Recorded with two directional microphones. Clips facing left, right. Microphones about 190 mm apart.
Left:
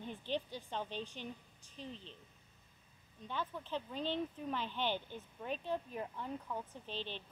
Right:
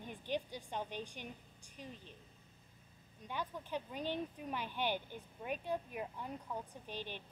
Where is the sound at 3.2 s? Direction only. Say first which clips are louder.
Left 1 dB; 15° right (ahead or behind).